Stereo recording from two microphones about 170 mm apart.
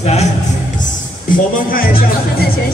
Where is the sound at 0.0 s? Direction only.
40° left (ahead or behind).